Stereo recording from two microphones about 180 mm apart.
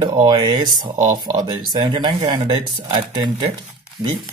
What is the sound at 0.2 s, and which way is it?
Speech, 25° right (ahead or behind).